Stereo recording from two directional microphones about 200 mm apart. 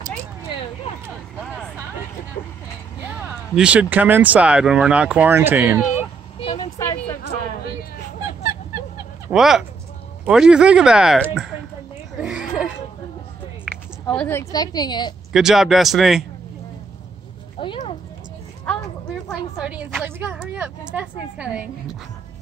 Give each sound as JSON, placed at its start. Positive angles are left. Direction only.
{"t": 1.4, "sound": "vehicle", "side_deg": 5}
{"t": 3.0, "sound": "speech", "side_deg": -5}
{"t": 6.4, "sound": "vehicle", "side_deg": 25}
{"t": 6.8, "sound": "a sound", "side_deg": 15}
{"t": 9.3, "sound": "speech", "side_deg": -5}
{"t": 12.2, "sound": "a sound", "side_deg": -5}
{"t": 14.0, "sound": "a woman's voice", "side_deg": 5}
{"t": 15.3, "sound": "speech", "side_deg": 0}
{"t": 17.6, "sound": "a sound", "side_deg": 25}
{"t": 19.2, "sound": "speech", "side_deg": -5}